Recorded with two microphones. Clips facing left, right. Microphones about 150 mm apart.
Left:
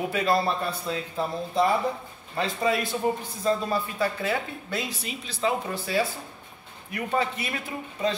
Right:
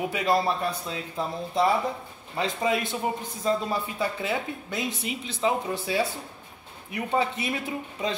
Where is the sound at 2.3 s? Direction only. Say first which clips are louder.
Left 1 dB; 15° right (ahead or behind).